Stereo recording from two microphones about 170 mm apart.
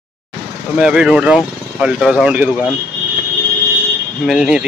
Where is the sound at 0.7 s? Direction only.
5° right (ahead or behind).